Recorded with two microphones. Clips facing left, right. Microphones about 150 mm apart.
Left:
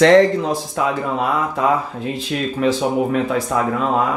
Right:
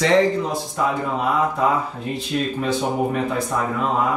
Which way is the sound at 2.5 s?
90° left.